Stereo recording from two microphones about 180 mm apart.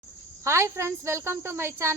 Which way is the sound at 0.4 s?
15° right (ahead or behind).